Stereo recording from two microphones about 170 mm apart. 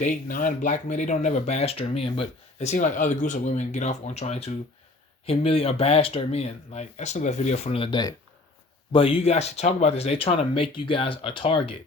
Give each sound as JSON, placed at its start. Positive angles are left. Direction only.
{"t": 0.0, "sound": "speech", "side_deg": 50}